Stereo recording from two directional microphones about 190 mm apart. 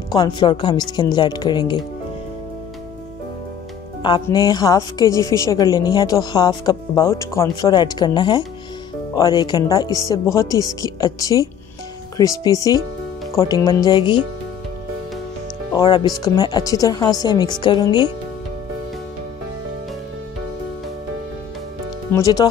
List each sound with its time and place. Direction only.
0.1 s a woman's voice: 20° left (ahead or behind)
4.0 s a woman's voice: 20° left (ahead or behind)
15.7 s a woman's voice: 20° left (ahead or behind)
22.1 s a woman's voice: 20° left (ahead or behind)